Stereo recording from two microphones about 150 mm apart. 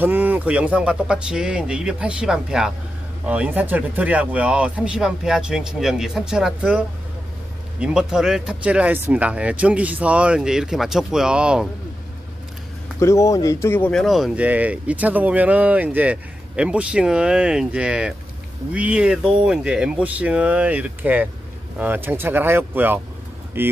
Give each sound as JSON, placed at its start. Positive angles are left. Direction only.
{"t": 0.0, "sound": "speech", "side_deg": -10}
{"t": 7.8, "sound": "speech", "side_deg": -5}
{"t": 13.0, "sound": "speech", "side_deg": 20}
{"t": 14.0, "sound": "speech", "side_deg": 0}